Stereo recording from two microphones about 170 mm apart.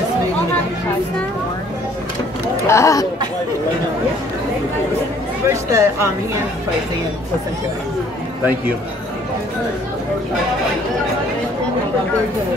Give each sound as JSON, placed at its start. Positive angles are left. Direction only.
{"t": 2.6, "sound": "speech", "side_deg": 15}
{"t": 5.5, "sound": "a woman's voice", "side_deg": -15}